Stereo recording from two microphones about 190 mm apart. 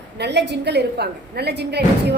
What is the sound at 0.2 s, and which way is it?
A woman's voice, 65° right (ahead or behind).